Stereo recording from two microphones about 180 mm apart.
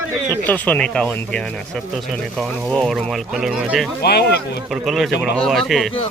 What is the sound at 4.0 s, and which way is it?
Speech, 65° left (ahead or behind).